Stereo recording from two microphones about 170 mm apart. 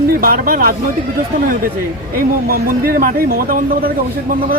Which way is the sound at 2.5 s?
60° right (ahead or behind).